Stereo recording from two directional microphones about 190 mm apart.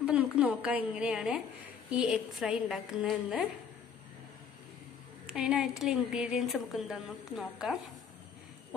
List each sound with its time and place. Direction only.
0.0 s a woman's voice: 5° right (ahead or behind)
5.2 s a woman's voice: 5° right (ahead or behind)